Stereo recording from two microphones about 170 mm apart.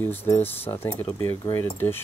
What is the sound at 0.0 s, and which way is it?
Speech, 10° left (ahead or behind).